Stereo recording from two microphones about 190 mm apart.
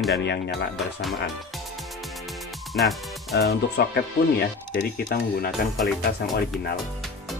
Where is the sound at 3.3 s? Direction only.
55° left (ahead or behind).